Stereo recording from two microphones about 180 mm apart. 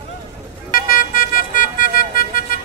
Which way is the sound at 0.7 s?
50° left (ahead or behind).